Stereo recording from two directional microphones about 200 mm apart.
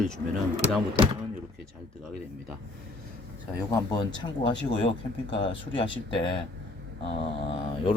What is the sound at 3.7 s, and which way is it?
Speech, 20° left (ahead or behind).